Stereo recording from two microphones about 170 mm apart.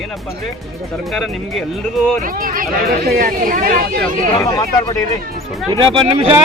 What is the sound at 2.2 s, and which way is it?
Speech, 55° right (ahead or behind).